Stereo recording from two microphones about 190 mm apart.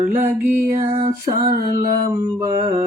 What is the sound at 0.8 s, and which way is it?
Mantra, 30° right (ahead or behind).